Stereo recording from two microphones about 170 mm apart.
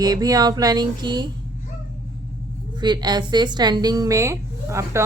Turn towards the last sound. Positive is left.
turn(degrees=-15)  # may be behind; listen again after turning